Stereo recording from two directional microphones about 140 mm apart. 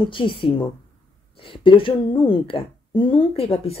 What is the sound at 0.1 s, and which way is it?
Speech, 35° left (ahead or behind).